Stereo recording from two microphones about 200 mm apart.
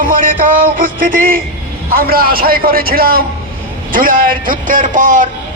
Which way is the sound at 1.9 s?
50° right (ahead or behind).